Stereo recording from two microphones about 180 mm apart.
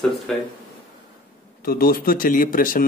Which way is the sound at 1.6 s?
55° left (ahead or behind).